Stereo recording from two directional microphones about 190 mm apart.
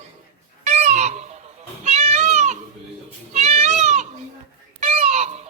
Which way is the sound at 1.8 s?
35° right (ahead or behind).